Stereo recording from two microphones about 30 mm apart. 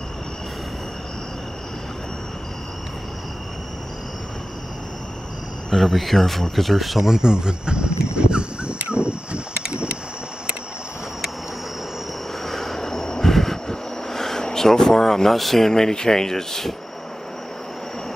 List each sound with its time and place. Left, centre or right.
5.7 s speech: centre
7.0 s speech: right
8.7 s a sound: right
12.4 s vehicle: centre
14.4 s speech: centre